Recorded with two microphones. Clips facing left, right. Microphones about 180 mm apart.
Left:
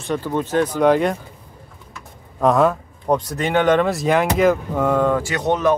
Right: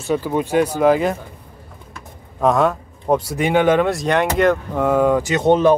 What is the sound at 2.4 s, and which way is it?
Speech, centre (ahead or behind).